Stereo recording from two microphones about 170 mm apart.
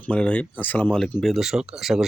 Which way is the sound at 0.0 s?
5° left (ahead or behind).